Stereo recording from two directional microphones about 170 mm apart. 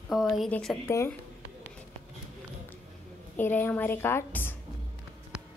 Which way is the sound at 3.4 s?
10° left (ahead or behind).